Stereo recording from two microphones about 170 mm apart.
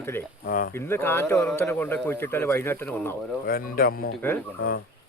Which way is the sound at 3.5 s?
60° left (ahead or behind).